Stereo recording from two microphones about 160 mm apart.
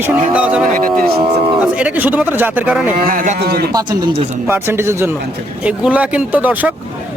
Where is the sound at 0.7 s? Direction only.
60° right (ahead or behind).